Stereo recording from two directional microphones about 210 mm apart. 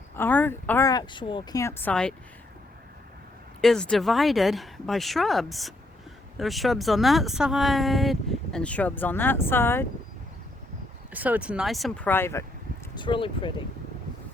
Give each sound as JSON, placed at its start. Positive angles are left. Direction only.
{"t": 0.2, "sound": "a woman's voice", "side_deg": 10}
{"t": 3.6, "sound": "speech", "side_deg": 0}
{"t": 11.1, "sound": "speech", "side_deg": -10}
{"t": 13.0, "sound": "speech", "side_deg": 25}